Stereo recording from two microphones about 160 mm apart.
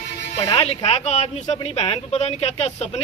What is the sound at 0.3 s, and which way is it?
Speech, 35° left (ahead or behind).